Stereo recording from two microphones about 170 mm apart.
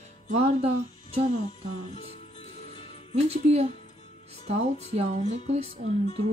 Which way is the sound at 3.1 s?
40° right (ahead or behind).